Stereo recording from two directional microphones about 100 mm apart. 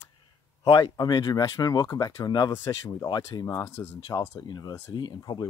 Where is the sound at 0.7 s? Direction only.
45° left (ahead or behind); by 3.9 s 25° left (ahead or behind).